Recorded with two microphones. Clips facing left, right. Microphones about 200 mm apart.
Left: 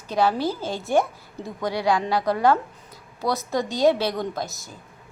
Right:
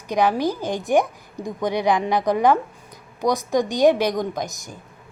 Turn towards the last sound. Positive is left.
turn(degrees=-15)  # may be behind; listen again after turning